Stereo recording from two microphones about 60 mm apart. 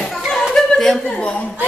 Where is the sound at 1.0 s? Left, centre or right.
Centre.